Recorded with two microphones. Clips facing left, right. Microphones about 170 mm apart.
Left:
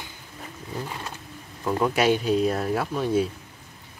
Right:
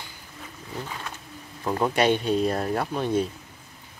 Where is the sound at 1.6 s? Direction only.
15° right (ahead or behind).